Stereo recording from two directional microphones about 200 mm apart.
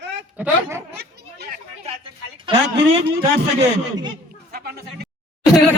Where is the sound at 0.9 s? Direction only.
55° right (ahead or behind).